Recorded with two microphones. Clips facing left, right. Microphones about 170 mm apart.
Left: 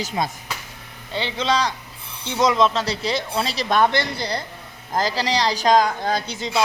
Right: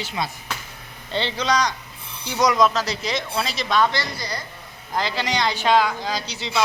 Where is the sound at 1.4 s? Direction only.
25° left (ahead or behind).